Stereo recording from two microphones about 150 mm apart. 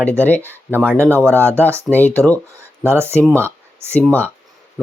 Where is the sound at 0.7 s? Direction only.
15° right (ahead or behind).